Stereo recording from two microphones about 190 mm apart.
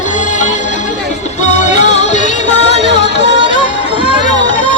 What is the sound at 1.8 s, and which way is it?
Music, 40° left (ahead or behind).